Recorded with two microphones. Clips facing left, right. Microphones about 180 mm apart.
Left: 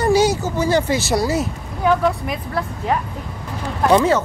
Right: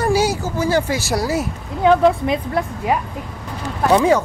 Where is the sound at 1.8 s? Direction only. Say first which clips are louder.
Right 4 dB; 25° right (ahead or behind).